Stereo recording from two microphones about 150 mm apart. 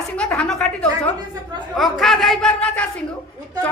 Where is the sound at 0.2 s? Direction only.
5° left (ahead or behind).